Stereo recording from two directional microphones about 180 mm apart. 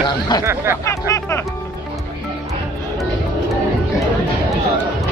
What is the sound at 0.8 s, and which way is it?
Speech, 15° left (ahead or behind).